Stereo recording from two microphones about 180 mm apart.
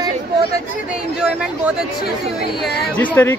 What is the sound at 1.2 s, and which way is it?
Speech, 5° right (ahead or behind).